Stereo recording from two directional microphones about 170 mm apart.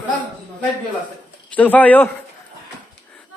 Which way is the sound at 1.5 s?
10° left (ahead or behind).